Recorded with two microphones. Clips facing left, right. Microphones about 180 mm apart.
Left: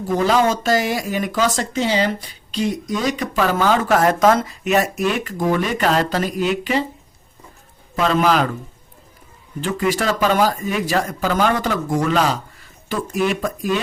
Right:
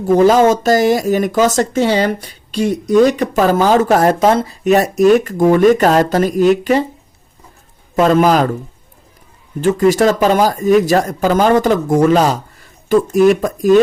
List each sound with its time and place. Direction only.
0.3 s speech: 40° right (ahead or behind)
7.9 s speech: 45° right (ahead or behind)
9.6 s speech: 45° right (ahead or behind)